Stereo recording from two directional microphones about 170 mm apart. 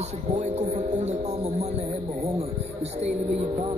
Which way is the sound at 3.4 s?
35° right (ahead or behind).